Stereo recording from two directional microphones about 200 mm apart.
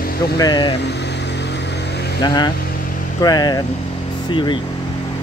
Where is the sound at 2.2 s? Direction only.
20° left (ahead or behind).